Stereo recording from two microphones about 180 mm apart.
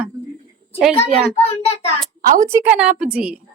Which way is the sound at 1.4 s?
35° left (ahead or behind).